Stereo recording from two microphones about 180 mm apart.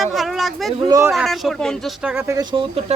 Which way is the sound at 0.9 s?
20° right (ahead or behind).